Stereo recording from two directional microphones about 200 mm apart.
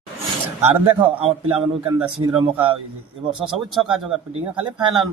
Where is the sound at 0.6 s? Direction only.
30° right (ahead or behind).